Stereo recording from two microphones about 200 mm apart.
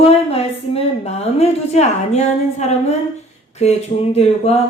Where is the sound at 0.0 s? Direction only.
30° left (ahead or behind).